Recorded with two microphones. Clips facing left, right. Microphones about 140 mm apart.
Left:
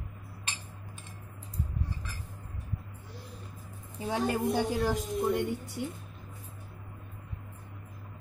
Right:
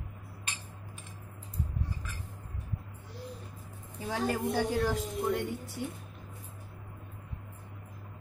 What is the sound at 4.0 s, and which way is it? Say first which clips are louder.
A woman's voice: left 2 dB; 20° left (ahead or behind).